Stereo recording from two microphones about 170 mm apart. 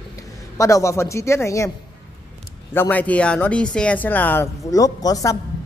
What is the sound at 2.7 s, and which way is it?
A woman's voice, 10° left (ahead or behind).